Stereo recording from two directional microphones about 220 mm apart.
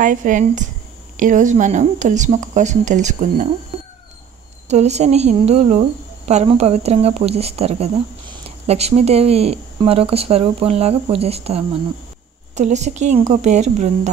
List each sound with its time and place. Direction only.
0.0 s speech: 35° right (ahead or behind)
4.6 s speech: 30° right (ahead or behind)